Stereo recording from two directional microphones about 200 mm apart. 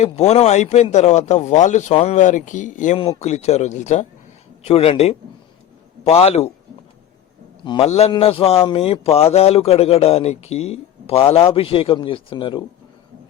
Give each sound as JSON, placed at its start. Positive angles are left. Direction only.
{"t": 0.0, "sound": "speech", "side_deg": 30}
{"t": 7.6, "sound": "a man's voice", "side_deg": 25}